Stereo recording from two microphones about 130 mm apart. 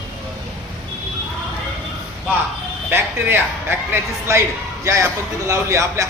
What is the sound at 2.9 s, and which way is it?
A man's voice, 15° right (ahead or behind).